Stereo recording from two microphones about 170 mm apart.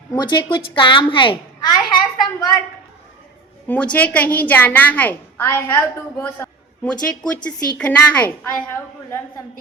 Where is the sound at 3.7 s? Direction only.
10° left (ahead or behind).